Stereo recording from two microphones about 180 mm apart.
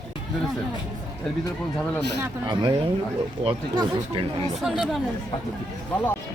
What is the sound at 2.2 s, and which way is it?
Speech, 25° right (ahead or behind).